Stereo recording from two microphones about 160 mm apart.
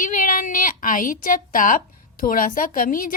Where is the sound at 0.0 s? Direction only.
55° left (ahead or behind).